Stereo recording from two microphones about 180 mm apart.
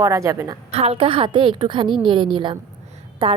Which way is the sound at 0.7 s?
35° right (ahead or behind).